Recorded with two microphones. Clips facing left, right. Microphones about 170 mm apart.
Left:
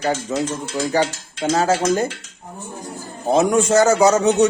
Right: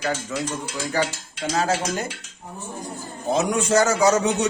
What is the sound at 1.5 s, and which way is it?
Speech, 45° left (ahead or behind).